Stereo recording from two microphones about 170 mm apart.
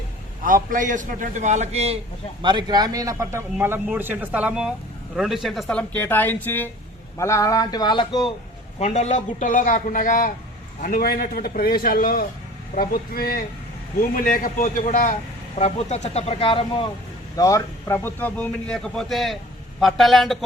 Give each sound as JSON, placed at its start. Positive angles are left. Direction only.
{"t": 0.4, "sound": "a man's voice", "side_deg": -55}
{"t": 2.4, "sound": "a man's voice", "side_deg": -25}
{"t": 8.8, "sound": "a man's voice", "side_deg": 40}
{"t": 17.3, "sound": "a man's voice", "side_deg": 20}